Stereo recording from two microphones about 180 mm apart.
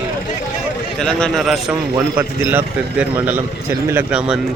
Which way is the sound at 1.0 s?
5° left (ahead or behind).